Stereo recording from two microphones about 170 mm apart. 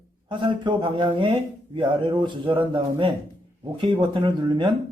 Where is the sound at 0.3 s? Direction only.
30° right (ahead or behind).